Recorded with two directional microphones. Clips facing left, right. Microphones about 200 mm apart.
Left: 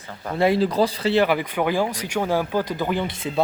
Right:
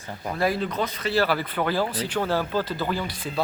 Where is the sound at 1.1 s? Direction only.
15° left (ahead or behind).